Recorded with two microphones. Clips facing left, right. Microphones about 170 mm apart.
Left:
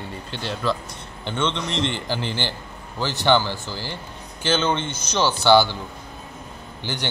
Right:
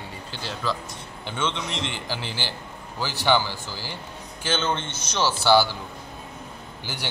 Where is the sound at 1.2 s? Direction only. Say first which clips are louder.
Left 4 dB; 5° right (ahead or behind).